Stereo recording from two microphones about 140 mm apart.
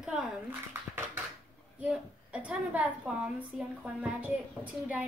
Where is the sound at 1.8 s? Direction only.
10° right (ahead or behind).